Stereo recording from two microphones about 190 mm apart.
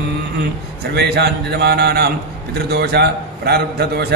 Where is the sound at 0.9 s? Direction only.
55° right (ahead or behind).